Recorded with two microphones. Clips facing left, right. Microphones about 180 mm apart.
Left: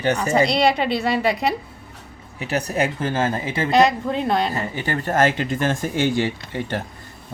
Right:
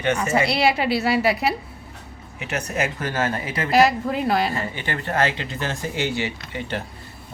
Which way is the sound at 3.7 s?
5° right (ahead or behind).